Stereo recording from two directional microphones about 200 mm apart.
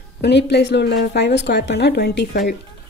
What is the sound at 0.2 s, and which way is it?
Speech, 55° left (ahead or behind).